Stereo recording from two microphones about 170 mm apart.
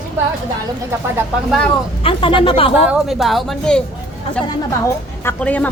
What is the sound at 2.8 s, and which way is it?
A woman's voice, 5° right (ahead or behind).